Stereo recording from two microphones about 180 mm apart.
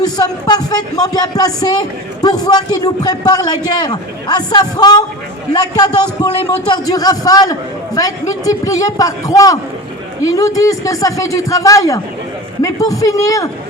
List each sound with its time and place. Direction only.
0.0 s a man's voice: 20° left (ahead or behind)